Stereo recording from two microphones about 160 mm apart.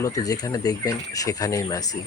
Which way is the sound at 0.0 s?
20° left (ahead or behind).